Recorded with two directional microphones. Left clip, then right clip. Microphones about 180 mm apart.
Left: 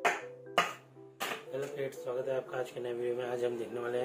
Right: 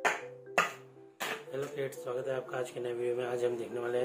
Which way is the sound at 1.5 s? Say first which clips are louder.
Even; 25° right (ahead or behind).